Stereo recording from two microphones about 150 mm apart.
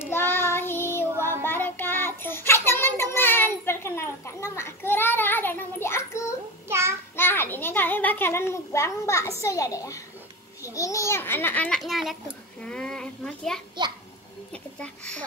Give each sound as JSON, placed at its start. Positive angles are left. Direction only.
{"t": 0.1, "sound": "child singing", "side_deg": 15}
{"t": 6.7, "sound": "child singing", "side_deg": -15}
{"t": 7.2, "sound": "a child's voice", "side_deg": 15}